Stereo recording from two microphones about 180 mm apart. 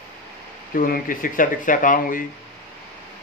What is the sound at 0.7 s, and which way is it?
Speech, 50° left (ahead or behind).